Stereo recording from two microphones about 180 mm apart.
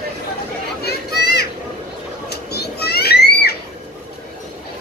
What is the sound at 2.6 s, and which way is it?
Children playing, 65° left (ahead or behind).